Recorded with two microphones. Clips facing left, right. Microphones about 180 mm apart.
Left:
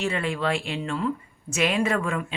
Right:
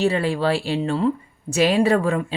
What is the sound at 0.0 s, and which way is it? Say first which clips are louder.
Speech: right 6 dB; 35° right (ahead or behind).